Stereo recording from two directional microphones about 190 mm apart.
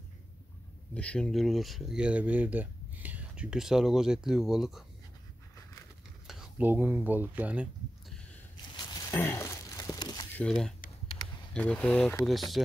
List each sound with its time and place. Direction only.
0.9 s speech: 5° left (ahead or behind)
6.2 s speech: 5° right (ahead or behind)
8.7 s a sound: 15° left (ahead or behind)
10.3 s speech: 5° left (ahead or behind)